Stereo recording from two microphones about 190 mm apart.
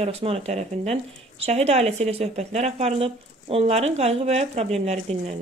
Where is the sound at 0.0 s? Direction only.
30° right (ahead or behind).